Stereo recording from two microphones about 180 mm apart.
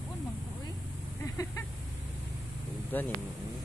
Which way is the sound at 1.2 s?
15° left (ahead or behind).